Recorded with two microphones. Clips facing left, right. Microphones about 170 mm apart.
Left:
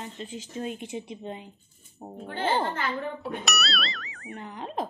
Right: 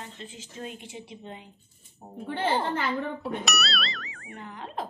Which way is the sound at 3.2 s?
Centre (ahead or behind).